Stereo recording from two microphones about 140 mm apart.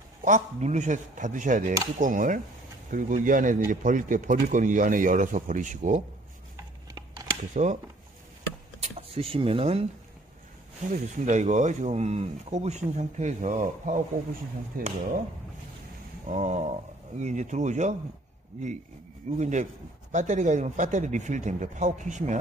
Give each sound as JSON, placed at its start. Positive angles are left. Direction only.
{"t": 0.2, "sound": "speech", "side_deg": -60}
{"t": 7.6, "sound": "speech", "side_deg": -55}
{"t": 8.8, "sound": "speech", "side_deg": -45}
{"t": 10.9, "sound": "speech", "side_deg": -60}
{"t": 14.7, "sound": "speech", "side_deg": -90}
{"t": 16.3, "sound": "speech", "side_deg": -55}